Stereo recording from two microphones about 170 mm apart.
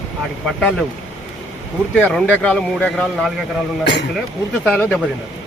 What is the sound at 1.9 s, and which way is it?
Speech, 10° left (ahead or behind).